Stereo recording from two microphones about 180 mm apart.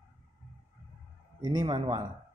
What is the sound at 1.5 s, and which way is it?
Speech, 25° right (ahead or behind).